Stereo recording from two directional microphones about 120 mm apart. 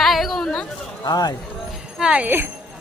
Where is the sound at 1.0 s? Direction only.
35° left (ahead or behind).